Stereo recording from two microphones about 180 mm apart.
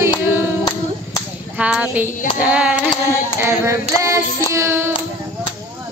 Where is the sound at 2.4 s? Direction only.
5° right (ahead or behind).